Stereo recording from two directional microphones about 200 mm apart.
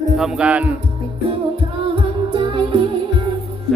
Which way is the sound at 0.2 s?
5° right (ahead or behind).